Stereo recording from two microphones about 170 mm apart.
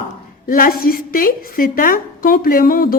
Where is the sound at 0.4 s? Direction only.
55° left (ahead or behind).